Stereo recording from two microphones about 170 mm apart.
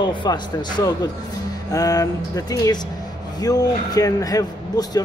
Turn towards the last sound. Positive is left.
turn(degrees=20)  # may be behind; listen again after turning